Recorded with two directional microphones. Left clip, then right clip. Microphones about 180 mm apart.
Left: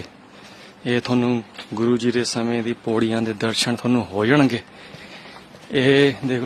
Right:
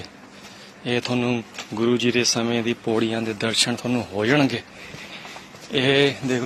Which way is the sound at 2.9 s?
35° left (ahead or behind).